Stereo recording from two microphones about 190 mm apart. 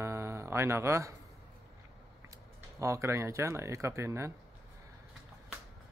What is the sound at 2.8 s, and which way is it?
Speech, 15° right (ahead or behind).